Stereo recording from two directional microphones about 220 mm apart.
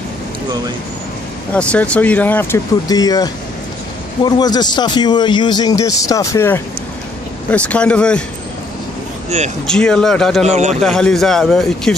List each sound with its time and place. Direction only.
1.5 s a man's voice: 5° left (ahead or behind)
9.7 s a man's voice: 5° left (ahead or behind)
10.4 s a man's voice: 30° right (ahead or behind)
10.8 s a man's voice: 5° left (ahead or behind)